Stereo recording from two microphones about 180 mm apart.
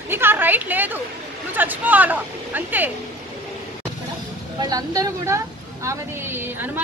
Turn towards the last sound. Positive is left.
turn(degrees=-10)  # may be behind; listen again after turning